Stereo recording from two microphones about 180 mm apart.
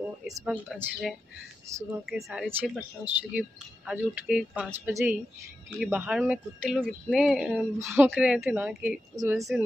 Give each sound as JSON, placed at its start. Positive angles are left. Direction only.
{"t": 0.5, "sound": "speech", "side_deg": -10}
{"t": 9.1, "sound": "speech", "side_deg": -20}